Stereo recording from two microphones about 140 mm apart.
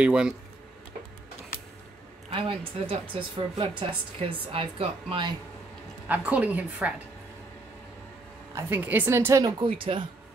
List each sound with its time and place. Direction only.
0.0 s a woman's voice: 5° right (ahead or behind)
2.3 s a woman's voice: 40° right (ahead or behind)
6.0 s a woman's voice: 10° right (ahead or behind)
8.5 s a woman's voice: 15° right (ahead or behind)
9.6 s a woman's voice: 40° right (ahead or behind)